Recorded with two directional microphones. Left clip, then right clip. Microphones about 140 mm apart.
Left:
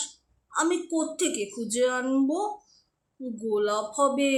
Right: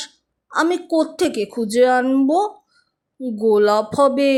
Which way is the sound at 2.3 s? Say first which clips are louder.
Right 10 dB; 50° right (ahead or behind).